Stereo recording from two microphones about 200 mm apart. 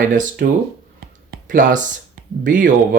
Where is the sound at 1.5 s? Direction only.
45° right (ahead or behind).